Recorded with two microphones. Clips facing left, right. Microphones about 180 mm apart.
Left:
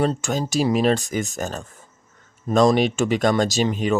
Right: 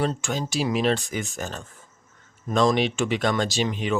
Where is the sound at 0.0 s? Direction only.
40° left (ahead or behind).